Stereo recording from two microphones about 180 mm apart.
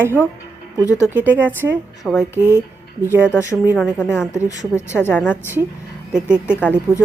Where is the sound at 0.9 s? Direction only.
15° left (ahead or behind).